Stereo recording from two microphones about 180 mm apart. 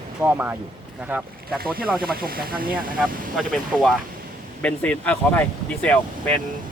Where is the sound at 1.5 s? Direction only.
55° right (ahead or behind).